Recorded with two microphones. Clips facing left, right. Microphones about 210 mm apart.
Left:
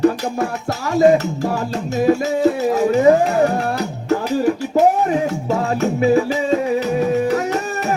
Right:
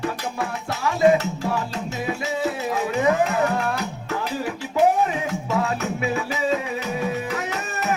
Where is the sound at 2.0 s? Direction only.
40° left (ahead or behind).